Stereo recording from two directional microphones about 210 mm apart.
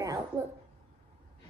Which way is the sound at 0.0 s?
15° right (ahead or behind).